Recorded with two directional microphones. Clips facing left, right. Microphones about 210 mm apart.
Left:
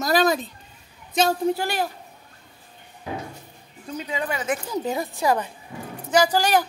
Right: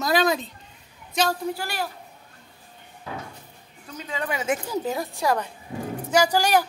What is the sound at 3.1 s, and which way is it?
Door, 15° left (ahead or behind).